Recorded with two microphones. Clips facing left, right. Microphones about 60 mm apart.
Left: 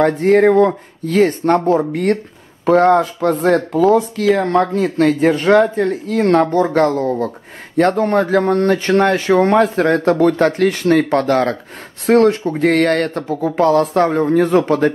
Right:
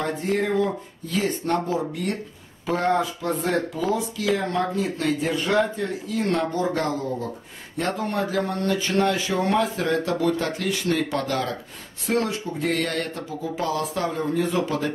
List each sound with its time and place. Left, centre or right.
0.0 s speech: left